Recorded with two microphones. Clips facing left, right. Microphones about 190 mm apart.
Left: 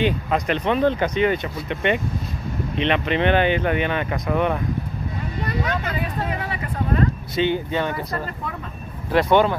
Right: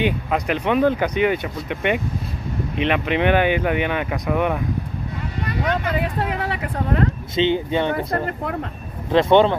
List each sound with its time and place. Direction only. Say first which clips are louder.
0.0 s speech: even; 10° right (ahead or behind)
5.9 s speech: right 3 dB; 70° right (ahead or behind)
7.3 s speech: right 3 dB; 20° right (ahead or behind)
7.9 s speech: right 5 dB; 60° right (ahead or behind)
9.1 s speech: right 3 dB; 25° right (ahead or behind)